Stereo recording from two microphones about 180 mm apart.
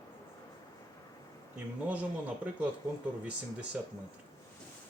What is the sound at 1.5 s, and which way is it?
A man's voice, 10° right (ahead or behind).